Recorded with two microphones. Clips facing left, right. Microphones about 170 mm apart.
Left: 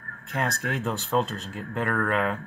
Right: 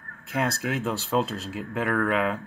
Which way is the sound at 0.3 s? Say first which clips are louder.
Right 2 dB; centre (ahead or behind).